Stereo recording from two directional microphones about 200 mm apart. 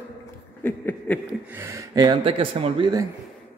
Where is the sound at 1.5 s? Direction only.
15° right (ahead or behind).